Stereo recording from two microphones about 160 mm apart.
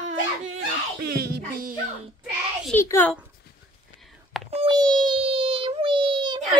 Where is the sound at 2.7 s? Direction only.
15° left (ahead or behind).